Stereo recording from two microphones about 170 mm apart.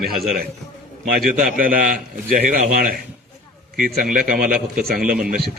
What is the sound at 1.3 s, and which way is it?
A man's voice, 55° right (ahead or behind).